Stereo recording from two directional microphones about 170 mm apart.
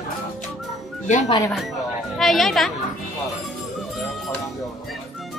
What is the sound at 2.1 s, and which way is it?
Speech, centre (ahead or behind).